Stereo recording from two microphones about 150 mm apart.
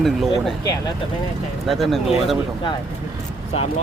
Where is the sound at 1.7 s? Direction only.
Centre (ahead or behind).